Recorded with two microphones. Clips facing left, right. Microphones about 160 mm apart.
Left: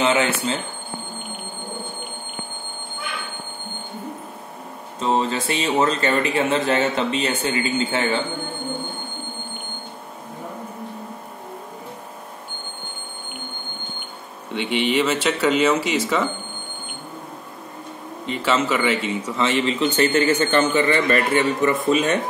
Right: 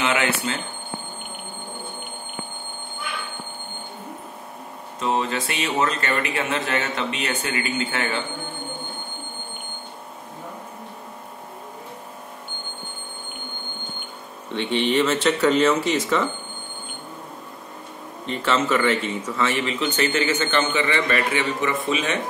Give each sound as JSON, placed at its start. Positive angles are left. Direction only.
{"t": 0.0, "sound": "a sound", "side_deg": 30}
{"t": 5.0, "sound": "speech", "side_deg": 30}
{"t": 14.5, "sound": "speech", "side_deg": 10}
{"t": 18.2, "sound": "speech", "side_deg": 10}
{"t": 19.5, "sound": "a man's voice", "side_deg": 35}